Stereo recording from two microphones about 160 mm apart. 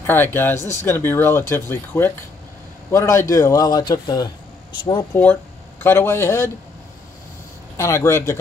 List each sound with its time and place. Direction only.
0.0 s speech: 15° left (ahead or behind)
5.1 s speech: 10° left (ahead or behind)
7.7 s speech: 15° left (ahead or behind)